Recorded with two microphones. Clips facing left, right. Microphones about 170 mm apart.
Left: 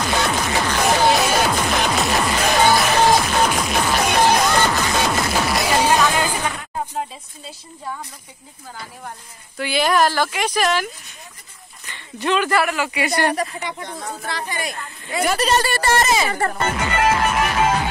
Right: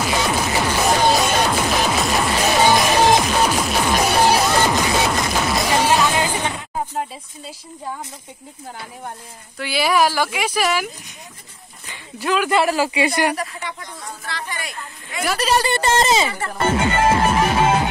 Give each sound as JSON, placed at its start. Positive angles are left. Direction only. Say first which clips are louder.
{"t": 0.0, "sound": "music", "louder": "right 1 dB", "side_deg": -10}
{"t": 5.1, "sound": "music", "louder": "even", "side_deg": 0}
{"t": 5.7, "sound": "music", "louder": "even", "side_deg": -15}
{"t": 9.6, "sound": "speech", "louder": "even", "side_deg": -5}
{"t": 11.9, "sound": "speech", "louder": "left 1 dB", "side_deg": -5}
{"t": 12.4, "sound": "music", "louder": "right 2 dB", "side_deg": -20}
{"t": 12.7, "sound": "speech", "louder": "right 4 dB", "side_deg": -30}
{"t": 13.3, "sound": "speech", "louder": "left 2 dB", "side_deg": 25}
{"t": 13.8, "sound": "speech", "louder": "left 4 dB", "side_deg": 45}
{"t": 14.5, "sound": "speech", "louder": "left 3 dB", "side_deg": 30}
{"t": 15.2, "sound": "speech", "louder": "even", "side_deg": 0}
{"t": 15.6, "sound": "music", "louder": "right 1 dB", "side_deg": -20}
{"t": 16.3, "sound": "speech", "louder": "left 5 dB", "side_deg": 50}
{"t": 16.5, "sound": "music", "louder": "right 3 dB", "side_deg": -25}